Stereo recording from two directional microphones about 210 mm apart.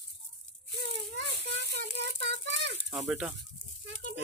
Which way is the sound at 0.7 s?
55° right (ahead or behind).